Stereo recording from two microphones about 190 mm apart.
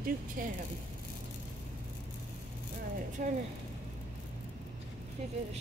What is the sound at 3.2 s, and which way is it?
Speech, 50° right (ahead or behind).